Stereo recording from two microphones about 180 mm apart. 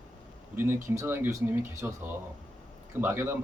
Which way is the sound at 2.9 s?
15° right (ahead or behind).